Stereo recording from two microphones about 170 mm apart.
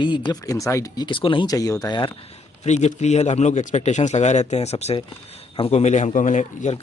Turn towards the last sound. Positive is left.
turn(degrees=45)  # may be behind; listen again after turning